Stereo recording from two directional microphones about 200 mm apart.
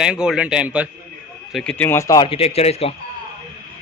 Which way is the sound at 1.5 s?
5° left (ahead or behind).